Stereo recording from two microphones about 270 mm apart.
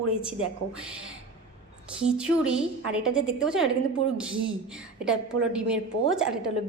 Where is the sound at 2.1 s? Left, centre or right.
Centre.